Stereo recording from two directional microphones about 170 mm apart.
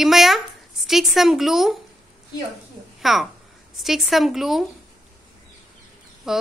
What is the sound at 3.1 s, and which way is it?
A woman's voice, centre (ahead or behind).